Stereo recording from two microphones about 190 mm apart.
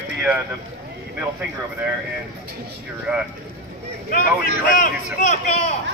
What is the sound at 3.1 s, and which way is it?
Speech, centre (ahead or behind).